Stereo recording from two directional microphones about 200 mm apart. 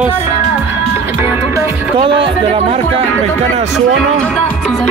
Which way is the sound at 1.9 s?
25° right (ahead or behind).